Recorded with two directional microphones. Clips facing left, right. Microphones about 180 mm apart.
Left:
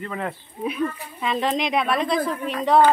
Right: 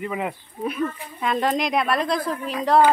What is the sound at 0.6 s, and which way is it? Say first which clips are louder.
A woman's voice: even; centre (ahead or behind).